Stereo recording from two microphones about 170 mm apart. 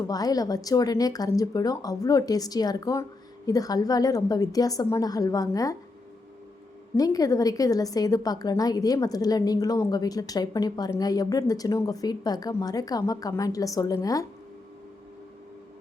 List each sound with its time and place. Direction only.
0.1 s a woman's voice: 20° left (ahead or behind)
6.9 s a woman's voice: 20° left (ahead or behind)